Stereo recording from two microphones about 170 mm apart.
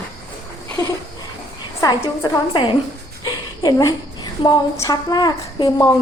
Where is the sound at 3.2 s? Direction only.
25° left (ahead or behind).